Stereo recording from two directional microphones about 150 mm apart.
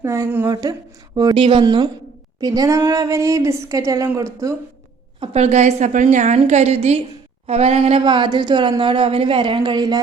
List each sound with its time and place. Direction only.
0.0 s a woman's voice: 20° right (ahead or behind)
5.2 s a woman's voice: 45° right (ahead or behind); by 10.0 s 30° right (ahead or behind)